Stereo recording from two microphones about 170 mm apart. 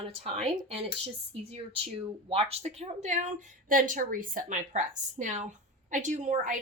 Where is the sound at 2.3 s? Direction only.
35° right (ahead or behind).